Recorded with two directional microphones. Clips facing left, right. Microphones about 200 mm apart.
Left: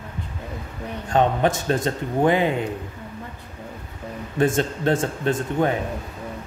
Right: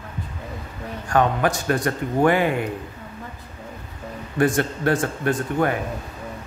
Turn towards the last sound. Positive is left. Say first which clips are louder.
# even
turn(degrees=25)  # may be behind; listen again after turning